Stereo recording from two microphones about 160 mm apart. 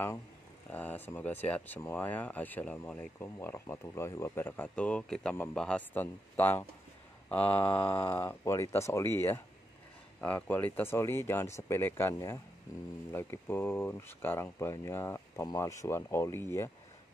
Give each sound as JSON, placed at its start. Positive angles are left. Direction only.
{"t": 0.7, "sound": "speech", "side_deg": 10}